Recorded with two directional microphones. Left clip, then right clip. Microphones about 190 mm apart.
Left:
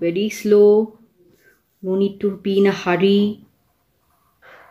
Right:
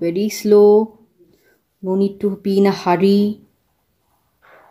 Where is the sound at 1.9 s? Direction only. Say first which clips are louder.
Right 1 dB; 30° right (ahead or behind).